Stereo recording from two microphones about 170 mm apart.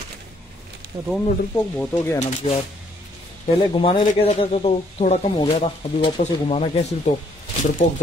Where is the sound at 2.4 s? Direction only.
35° left (ahead or behind).